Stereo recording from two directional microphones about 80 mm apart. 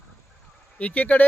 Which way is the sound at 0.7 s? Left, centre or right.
Centre.